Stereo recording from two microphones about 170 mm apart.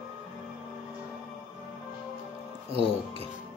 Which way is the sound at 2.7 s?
35° right (ahead or behind).